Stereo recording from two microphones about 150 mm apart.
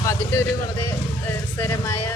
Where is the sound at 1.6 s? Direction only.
20° left (ahead or behind).